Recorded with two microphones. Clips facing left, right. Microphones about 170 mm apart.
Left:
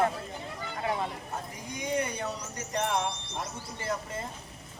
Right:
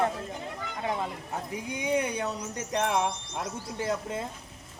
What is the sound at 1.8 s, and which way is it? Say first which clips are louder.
Speech: right 3 dB; 60° right (ahead or behind).